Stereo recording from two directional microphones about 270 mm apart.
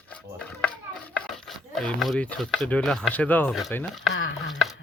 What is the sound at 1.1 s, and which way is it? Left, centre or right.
Speech, centre.